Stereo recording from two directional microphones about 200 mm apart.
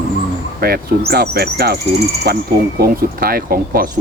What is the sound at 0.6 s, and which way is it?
Speech, 50° right (ahead or behind).